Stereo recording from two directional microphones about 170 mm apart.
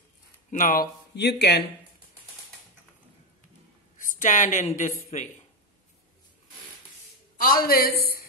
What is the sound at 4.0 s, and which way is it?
Speech, 50° left (ahead or behind).